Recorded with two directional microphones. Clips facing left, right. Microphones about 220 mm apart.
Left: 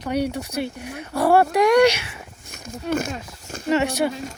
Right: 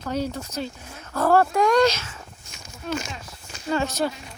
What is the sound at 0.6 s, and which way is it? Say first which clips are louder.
Speech: left 5 dB; 65° left (ahead or behind).